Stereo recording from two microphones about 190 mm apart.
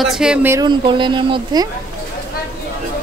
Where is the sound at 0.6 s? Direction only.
25° right (ahead or behind).